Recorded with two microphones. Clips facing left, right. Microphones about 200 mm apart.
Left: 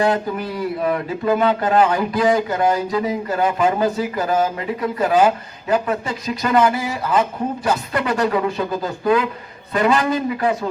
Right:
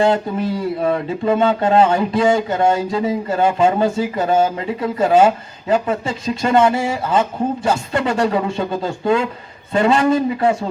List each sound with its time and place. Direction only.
0.0 s speech: 25° right (ahead or behind)